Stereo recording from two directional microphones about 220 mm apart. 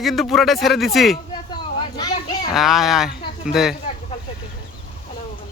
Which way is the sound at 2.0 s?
20° left (ahead or behind).